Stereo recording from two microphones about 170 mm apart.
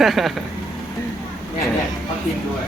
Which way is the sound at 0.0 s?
Centre (ahead or behind).